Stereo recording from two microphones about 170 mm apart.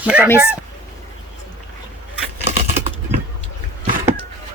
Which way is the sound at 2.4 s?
40° right (ahead or behind).